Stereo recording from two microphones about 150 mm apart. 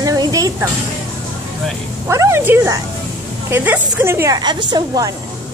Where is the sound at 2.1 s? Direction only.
20° right (ahead or behind).